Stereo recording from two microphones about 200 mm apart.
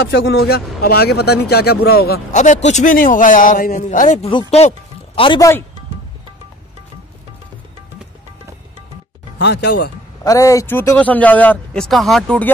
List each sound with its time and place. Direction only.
0.0 s speech: 55° left (ahead or behind)
2.3 s a man's voice: 40° left (ahead or behind)
4.3 s speech: 25° left (ahead or behind)
9.4 s speech: 55° left (ahead or behind)
10.2 s speech: 15° left (ahead or behind)